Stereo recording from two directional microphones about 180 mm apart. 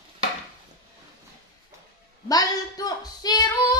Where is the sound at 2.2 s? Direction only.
20° left (ahead or behind).